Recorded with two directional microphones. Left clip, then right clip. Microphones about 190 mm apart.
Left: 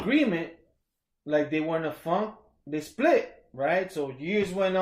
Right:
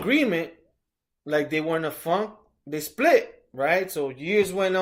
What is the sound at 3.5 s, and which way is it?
Speech, 15° right (ahead or behind).